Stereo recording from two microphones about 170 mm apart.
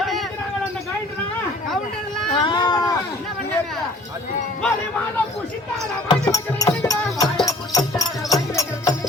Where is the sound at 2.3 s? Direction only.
30° left (ahead or behind).